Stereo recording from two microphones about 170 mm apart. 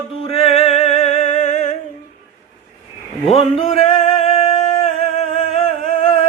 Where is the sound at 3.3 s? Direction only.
35° left (ahead or behind).